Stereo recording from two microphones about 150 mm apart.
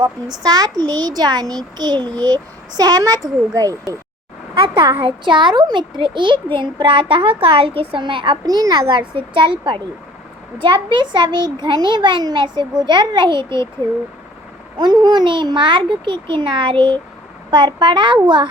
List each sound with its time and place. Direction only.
0.0 s a child's voice: 25° right (ahead or behind)
5.0 s a child's voice: 35° right (ahead or behind)
14.8 s a child's voice: 30° right (ahead or behind)